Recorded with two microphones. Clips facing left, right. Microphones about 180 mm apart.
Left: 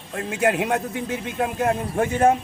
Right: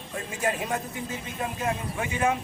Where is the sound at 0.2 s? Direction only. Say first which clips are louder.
Left 8 dB; 70° left (ahead or behind).